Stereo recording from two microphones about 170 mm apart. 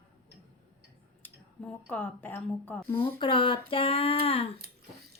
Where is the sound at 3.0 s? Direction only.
30° left (ahead or behind).